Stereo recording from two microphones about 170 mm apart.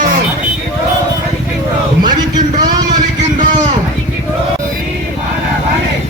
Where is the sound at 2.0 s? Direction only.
25° right (ahead or behind).